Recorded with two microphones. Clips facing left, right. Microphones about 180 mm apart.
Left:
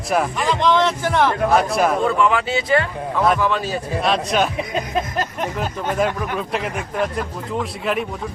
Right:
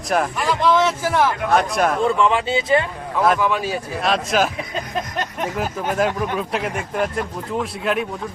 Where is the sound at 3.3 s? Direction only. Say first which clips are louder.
Even; 10° right (ahead or behind).